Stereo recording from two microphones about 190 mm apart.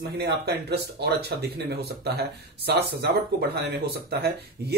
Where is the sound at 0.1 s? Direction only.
60° right (ahead or behind).